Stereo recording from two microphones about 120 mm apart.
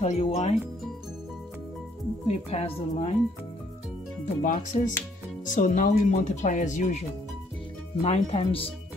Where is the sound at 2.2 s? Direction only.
60° left (ahead or behind).